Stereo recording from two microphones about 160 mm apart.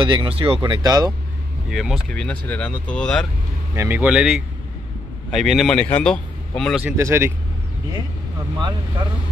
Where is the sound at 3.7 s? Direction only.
10° right (ahead or behind); by 6.8 s 5° left (ahead or behind).